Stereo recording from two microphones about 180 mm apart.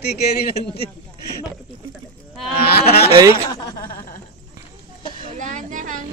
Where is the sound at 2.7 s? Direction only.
60° left (ahead or behind).